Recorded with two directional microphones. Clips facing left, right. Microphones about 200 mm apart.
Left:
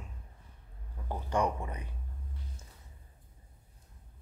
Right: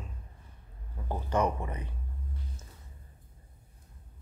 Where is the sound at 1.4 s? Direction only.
20° right (ahead or behind).